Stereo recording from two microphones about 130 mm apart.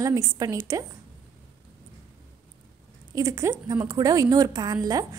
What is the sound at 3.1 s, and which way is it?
A woman's voice, 25° right (ahead or behind).